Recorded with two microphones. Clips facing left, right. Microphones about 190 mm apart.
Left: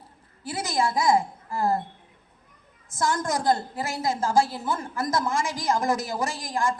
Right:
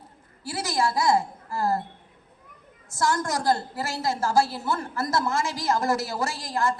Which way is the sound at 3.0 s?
20° left (ahead or behind).